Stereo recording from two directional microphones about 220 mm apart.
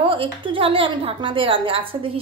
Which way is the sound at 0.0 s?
25° right (ahead or behind).